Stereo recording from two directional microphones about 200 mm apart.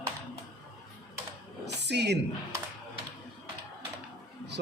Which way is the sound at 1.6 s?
55° right (ahead or behind).